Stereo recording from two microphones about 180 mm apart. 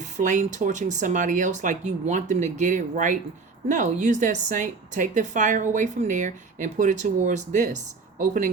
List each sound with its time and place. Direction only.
0.0 s a woman's voice: 45° right (ahead or behind)